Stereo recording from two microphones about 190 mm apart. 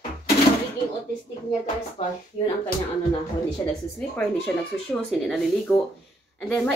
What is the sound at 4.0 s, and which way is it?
Speech, 5° left (ahead or behind).